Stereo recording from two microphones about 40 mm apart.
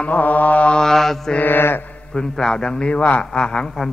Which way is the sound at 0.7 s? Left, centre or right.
Centre.